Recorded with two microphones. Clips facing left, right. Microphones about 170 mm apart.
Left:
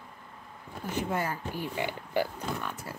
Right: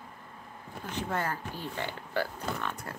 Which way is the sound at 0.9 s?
10° left (ahead or behind).